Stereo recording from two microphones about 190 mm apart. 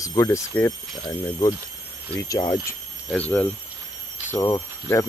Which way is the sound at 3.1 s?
10° left (ahead or behind).